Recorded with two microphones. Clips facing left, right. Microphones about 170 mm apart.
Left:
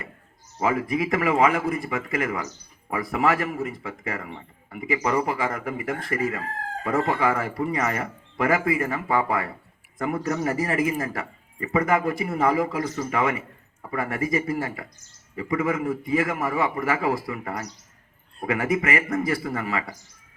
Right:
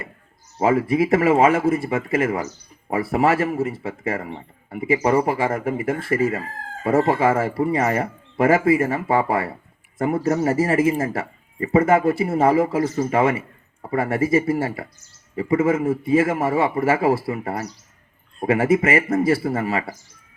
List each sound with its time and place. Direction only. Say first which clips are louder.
0.6 s speech: right 6 dB; 30° right (ahead or behind)